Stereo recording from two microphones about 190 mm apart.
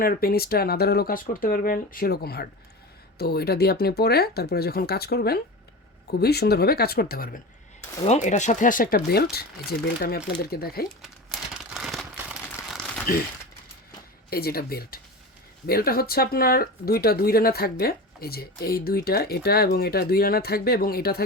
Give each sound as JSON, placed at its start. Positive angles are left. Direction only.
{"t": 0.0, "sound": "speech", "side_deg": 50}
{"t": 8.0, "sound": "speech", "side_deg": 40}
{"t": 11.0, "sound": "a sound", "side_deg": 0}
{"t": 14.3, "sound": "speech", "side_deg": 55}